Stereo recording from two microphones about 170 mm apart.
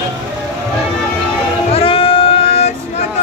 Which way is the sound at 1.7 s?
35° left (ahead or behind).